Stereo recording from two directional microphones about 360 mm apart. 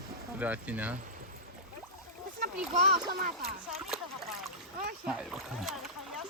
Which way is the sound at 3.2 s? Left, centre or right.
Right.